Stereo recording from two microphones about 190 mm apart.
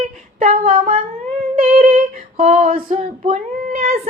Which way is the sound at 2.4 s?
35° right (ahead or behind).